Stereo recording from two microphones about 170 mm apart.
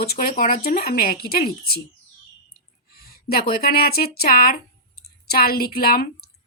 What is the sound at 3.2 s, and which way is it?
Speech, 60° left (ahead or behind).